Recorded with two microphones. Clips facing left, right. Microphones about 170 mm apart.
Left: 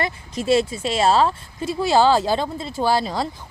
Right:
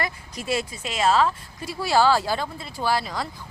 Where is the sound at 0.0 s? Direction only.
25° left (ahead or behind).